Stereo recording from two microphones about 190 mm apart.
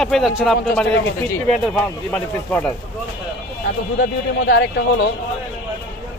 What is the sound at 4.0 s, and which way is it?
Speech, 60° left (ahead or behind).